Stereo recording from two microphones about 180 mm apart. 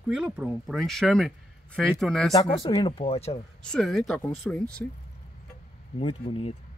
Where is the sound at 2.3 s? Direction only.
30° left (ahead or behind).